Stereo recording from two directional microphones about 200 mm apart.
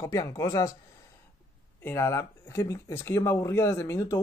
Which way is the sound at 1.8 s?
10° left (ahead or behind).